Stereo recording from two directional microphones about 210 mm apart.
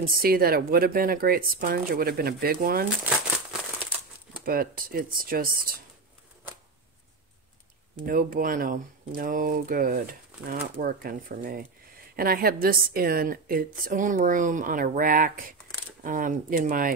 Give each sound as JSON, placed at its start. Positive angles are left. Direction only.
{"t": 0.0, "sound": "speech", "side_deg": -45}
{"t": 4.5, "sound": "speech", "side_deg": -45}
{"t": 8.0, "sound": "speech", "side_deg": -45}